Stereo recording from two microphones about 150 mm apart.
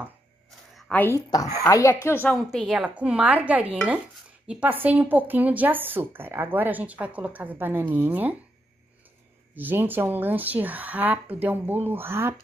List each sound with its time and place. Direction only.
0.7 s a woman's voice: 10° left (ahead or behind)
2.3 s a woman's voice: centre (ahead or behind)
9.6 s a woman's voice: 10° right (ahead or behind)